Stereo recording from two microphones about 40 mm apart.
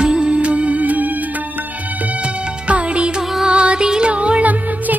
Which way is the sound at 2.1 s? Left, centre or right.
Right.